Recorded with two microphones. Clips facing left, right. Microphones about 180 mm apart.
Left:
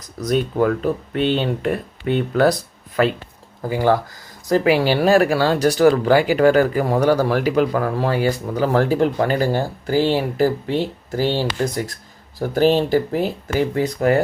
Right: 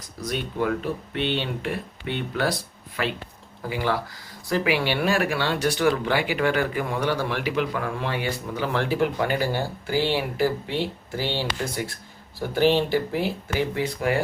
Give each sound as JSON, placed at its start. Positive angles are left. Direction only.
{"t": 0.2, "sound": "speech", "side_deg": 40}